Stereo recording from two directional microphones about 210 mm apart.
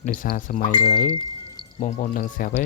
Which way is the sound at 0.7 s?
25° left (ahead or behind).